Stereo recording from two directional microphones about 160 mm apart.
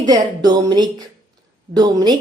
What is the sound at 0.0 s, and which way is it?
A woman's voice, 25° right (ahead or behind).